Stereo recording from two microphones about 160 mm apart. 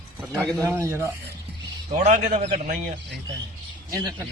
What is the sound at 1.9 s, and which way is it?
Speech, 45° right (ahead or behind).